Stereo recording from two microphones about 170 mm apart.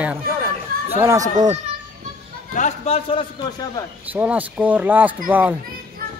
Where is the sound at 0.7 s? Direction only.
60° right (ahead or behind).